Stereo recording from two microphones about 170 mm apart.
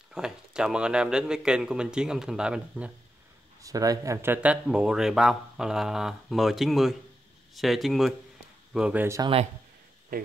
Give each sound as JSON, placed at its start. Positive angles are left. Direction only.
{"t": 0.1, "sound": "speech", "side_deg": -5}
{"t": 3.6, "sound": "speech", "side_deg": -20}
{"t": 10.1, "sound": "speech", "side_deg": -60}